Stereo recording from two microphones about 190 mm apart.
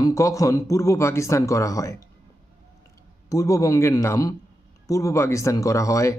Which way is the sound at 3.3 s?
15° left (ahead or behind).